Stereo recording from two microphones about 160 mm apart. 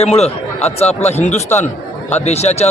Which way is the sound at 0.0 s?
40° left (ahead or behind).